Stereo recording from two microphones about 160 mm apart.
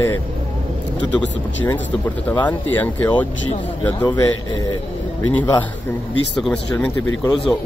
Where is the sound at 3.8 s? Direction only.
25° left (ahead or behind).